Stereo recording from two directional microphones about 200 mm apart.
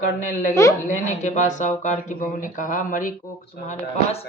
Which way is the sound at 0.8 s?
40° left (ahead or behind).